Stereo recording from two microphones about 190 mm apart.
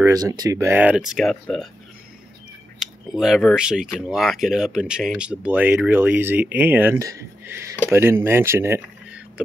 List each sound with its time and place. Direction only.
0.0 s speech: 20° right (ahead or behind); by 1.7 s centre (ahead or behind)
2.8 s speech: centre (ahead or behind)